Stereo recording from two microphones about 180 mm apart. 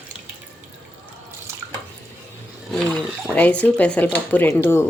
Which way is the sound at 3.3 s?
10° left (ahead or behind).